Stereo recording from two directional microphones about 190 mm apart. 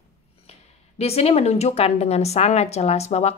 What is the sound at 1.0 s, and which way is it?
A woman's voice, 35° left (ahead or behind).